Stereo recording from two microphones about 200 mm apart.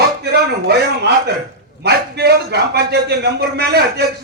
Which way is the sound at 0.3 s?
55° right (ahead or behind).